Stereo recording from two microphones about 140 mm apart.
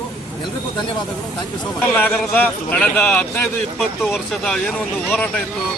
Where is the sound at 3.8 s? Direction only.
Centre (ahead or behind).